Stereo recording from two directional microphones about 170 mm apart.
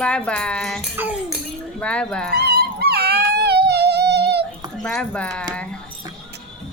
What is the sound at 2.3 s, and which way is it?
Music, 65° right (ahead or behind).